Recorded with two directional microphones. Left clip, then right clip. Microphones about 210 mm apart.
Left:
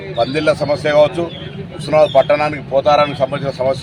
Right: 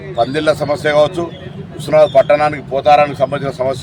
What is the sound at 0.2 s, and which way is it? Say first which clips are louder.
A man's voice: right 1 dB; 25° right (ahead or behind).